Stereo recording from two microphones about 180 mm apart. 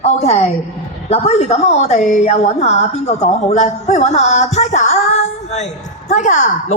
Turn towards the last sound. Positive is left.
turn(degrees=40)  # may be behind; listen again after turning